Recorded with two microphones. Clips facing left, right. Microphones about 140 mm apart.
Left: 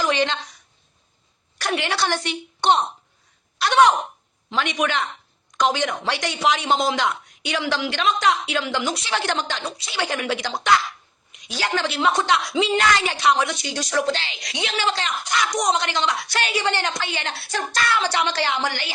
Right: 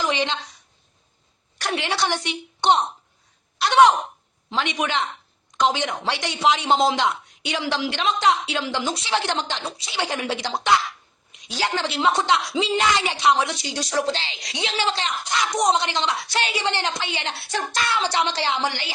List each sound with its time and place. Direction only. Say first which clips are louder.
0.0 s a woman's voice: left 2 dB; 20° right (ahead or behind)
1.5 s speech: left 1 dB; 25° right (ahead or behind)